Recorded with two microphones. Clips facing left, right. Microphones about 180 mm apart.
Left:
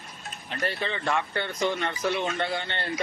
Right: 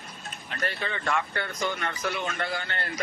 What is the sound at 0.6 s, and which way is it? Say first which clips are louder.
Speech: left 2 dB; 30° left (ahead or behind).